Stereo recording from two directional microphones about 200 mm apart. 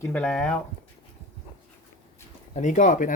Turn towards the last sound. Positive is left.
turn(degrees=40)  # may be behind; listen again after turning